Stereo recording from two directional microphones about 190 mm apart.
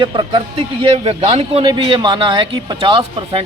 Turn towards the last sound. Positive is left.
turn(degrees=-30)  # may be behind; listen again after turning